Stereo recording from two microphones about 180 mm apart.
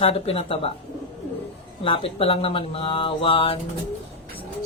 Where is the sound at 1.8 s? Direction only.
30° left (ahead or behind).